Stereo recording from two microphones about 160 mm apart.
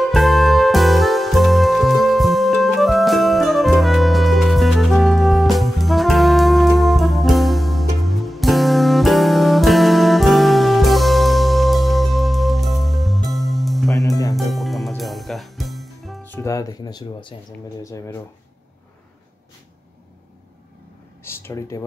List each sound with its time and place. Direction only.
0.0 s music: centre (ahead or behind)
14.0 s music: 20° left (ahead or behind)
14.3 s music: centre (ahead or behind)
16.3 s music: 20° left (ahead or behind)
17.8 s speech: 20° left (ahead or behind)
21.2 s a sound: 15° left (ahead or behind)